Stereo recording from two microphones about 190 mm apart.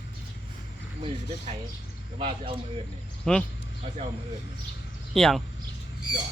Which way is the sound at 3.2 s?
5° left (ahead or behind).